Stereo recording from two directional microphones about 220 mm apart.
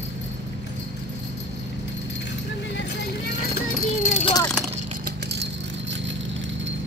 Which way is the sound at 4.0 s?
30° left (ahead or behind).